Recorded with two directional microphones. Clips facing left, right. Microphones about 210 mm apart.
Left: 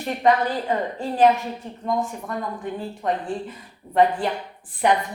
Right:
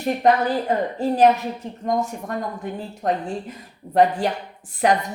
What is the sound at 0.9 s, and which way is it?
A man's voice, 40° right (ahead or behind).